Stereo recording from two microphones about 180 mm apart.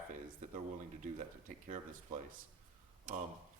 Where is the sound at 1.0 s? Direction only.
45° right (ahead or behind).